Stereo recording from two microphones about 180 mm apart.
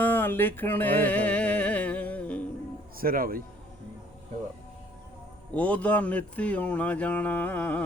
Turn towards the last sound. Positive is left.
turn(degrees=10)  # may be behind; listen again after turning